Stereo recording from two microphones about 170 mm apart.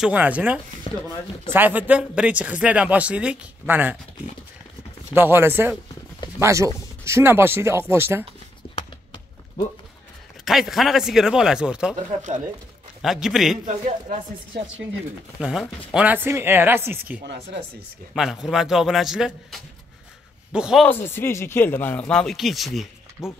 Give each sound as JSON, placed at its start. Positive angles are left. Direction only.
{"t": 0.0, "sound": "speech", "side_deg": -10}
{"t": 0.9, "sound": "speech", "side_deg": 35}
{"t": 1.5, "sound": "speech", "side_deg": -10}
{"t": 5.1, "sound": "speech", "side_deg": -15}
{"t": 8.7, "sound": "clip-clop", "side_deg": 30}
{"t": 10.4, "sound": "speech", "side_deg": 0}
{"t": 13.0, "sound": "speech", "side_deg": 0}
{"t": 13.7, "sound": "a man's voice", "side_deg": -45}
{"t": 15.4, "sound": "speech", "side_deg": -5}
{"t": 17.2, "sound": "speech", "side_deg": -90}
{"t": 18.1, "sound": "speech", "side_deg": -5}
{"t": 20.8, "sound": "speech", "side_deg": 10}